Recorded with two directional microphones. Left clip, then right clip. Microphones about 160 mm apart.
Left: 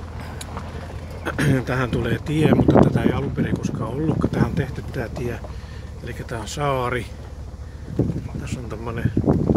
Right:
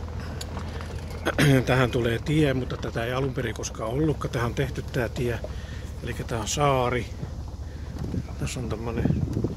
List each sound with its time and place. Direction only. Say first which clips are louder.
1.2 s speech: right 1 dB; 10° right (ahead or behind)
3.1 s speech: left 4 dB; 10° right (ahead or behind)
8.8 s speech: left 1 dB; 5° right (ahead or behind)